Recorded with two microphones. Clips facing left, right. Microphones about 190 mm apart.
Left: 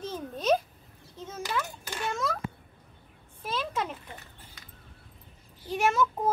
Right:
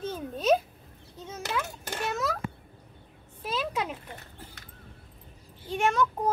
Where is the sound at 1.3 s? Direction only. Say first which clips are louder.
Even; 5° right (ahead or behind).